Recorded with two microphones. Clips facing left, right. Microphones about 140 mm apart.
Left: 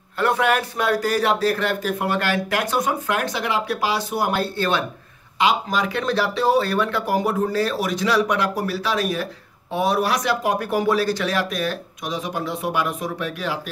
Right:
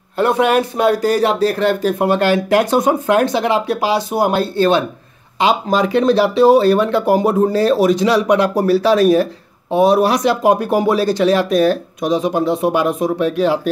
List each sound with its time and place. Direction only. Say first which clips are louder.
0.2 s speech: right 6 dB; 20° right (ahead or behind)
9.7 s speech: right 8 dB; 20° right (ahead or behind)